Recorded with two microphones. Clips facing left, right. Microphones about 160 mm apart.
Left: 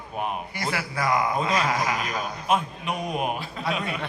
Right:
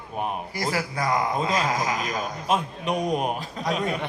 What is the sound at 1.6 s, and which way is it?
Speech, 45° right (ahead or behind).